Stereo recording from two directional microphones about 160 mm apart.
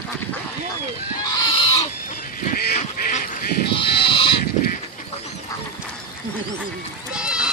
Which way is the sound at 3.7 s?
35° left (ahead or behind).